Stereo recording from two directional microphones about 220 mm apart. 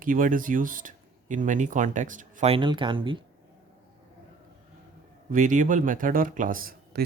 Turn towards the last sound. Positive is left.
turn(degrees=-40)  # may be behind; listen again after turning